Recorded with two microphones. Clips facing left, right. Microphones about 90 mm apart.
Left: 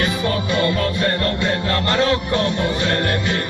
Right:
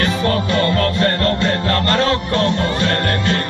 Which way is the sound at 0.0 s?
15° left (ahead or behind).